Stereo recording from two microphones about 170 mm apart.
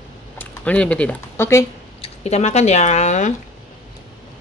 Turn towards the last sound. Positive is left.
turn(degrees=45)  # may be behind; listen again after turning